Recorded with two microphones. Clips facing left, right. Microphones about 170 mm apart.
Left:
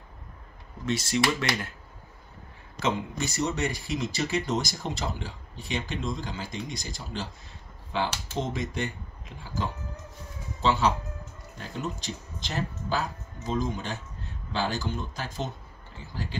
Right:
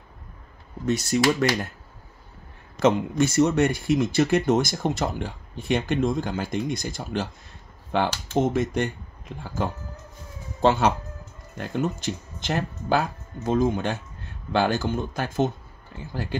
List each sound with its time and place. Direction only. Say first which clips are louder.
1.1 s speech: right 5 dB; 45° right (ahead or behind)
2.8 s speech: right 9 dB; 55° right (ahead or behind)